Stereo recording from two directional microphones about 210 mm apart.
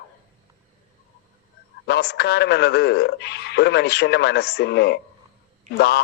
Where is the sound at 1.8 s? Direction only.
50° left (ahead or behind).